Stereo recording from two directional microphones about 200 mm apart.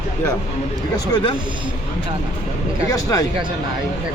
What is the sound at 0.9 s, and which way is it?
Speech, 20° left (ahead or behind).